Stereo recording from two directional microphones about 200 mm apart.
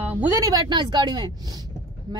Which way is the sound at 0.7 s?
20° right (ahead or behind).